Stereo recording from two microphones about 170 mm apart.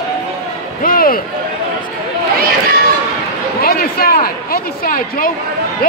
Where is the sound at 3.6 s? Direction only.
60° left (ahead or behind).